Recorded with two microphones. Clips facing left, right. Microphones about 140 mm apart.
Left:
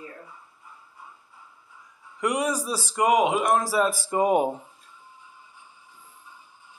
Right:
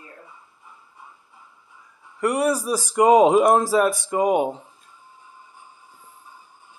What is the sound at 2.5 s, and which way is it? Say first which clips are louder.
Speech: right 6 dB; 10° right (ahead or behind).